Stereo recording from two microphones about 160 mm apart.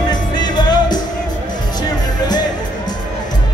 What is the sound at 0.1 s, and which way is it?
Music, 25° left (ahead or behind).